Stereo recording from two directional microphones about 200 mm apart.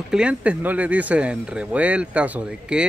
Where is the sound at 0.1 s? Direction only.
5° right (ahead or behind).